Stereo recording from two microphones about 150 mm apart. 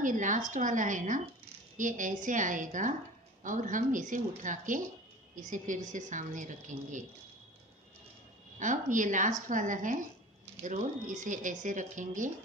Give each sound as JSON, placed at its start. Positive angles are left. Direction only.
{"t": 0.0, "sound": "a woman's voice", "side_deg": -60}
{"t": 8.5, "sound": "a woman's voice", "side_deg": -60}